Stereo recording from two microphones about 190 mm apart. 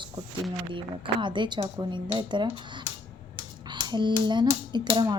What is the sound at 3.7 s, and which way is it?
A woman's voice, 25° right (ahead or behind).